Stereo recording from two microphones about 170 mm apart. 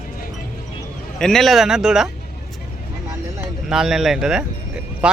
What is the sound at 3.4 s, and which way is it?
Speech, 5° right (ahead or behind).